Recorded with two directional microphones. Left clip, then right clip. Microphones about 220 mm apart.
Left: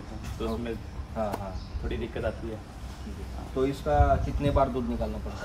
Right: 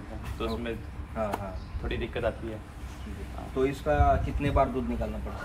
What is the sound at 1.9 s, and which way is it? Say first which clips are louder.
Speech: right 2 dB; 5° right (ahead or behind).